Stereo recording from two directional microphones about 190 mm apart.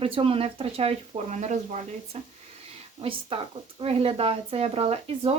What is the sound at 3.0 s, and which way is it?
Speech, 30° right (ahead or behind).